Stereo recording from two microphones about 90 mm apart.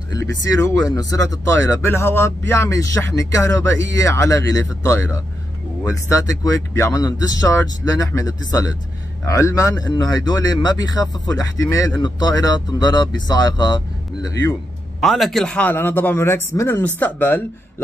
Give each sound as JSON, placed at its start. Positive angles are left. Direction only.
{"t": 0.1, "sound": "speech", "side_deg": 35}
{"t": 15.0, "sound": "a man's voice", "side_deg": 0}
{"t": 15.6, "sound": "speech", "side_deg": 20}